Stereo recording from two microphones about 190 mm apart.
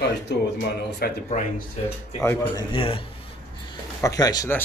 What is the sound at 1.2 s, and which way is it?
Speech, 40° left (ahead or behind).